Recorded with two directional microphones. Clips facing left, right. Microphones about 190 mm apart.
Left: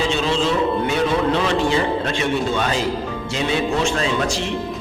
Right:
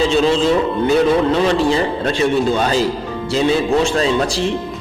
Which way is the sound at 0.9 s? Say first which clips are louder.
Right 5 dB; 35° right (ahead or behind).